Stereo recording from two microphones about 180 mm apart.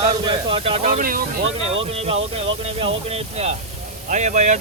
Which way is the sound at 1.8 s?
30° right (ahead or behind).